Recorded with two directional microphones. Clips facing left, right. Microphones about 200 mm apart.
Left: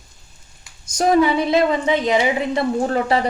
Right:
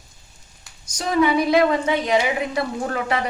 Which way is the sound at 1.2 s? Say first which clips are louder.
Even; 20° left (ahead or behind).